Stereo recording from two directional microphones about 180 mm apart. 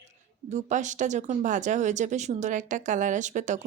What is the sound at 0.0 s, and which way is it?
A woman's voice, 40° right (ahead or behind).